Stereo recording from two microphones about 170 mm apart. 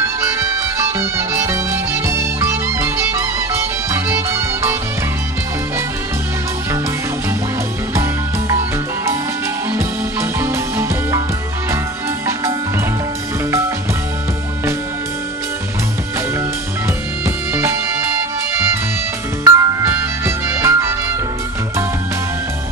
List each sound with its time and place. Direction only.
0.2 s music: 15° right (ahead or behind)
7.9 s music: 15° right (ahead or behind)
10.4 s music: 15° right (ahead or behind)
19.4 s music: 15° right (ahead or behind)